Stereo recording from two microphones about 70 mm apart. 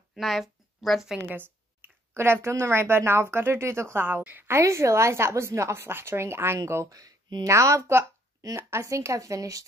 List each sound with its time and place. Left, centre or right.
0.1 s a woman's voice: centre
1.2 s a sound: right
2.1 s a woman's voice: right
4.5 s a woman's voice: right
7.4 s speech: right